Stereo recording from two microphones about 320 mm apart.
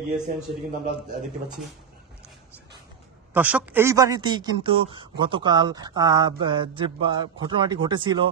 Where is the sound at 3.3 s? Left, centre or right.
Centre.